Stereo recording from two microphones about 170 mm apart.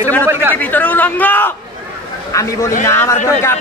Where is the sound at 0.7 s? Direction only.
10° left (ahead or behind).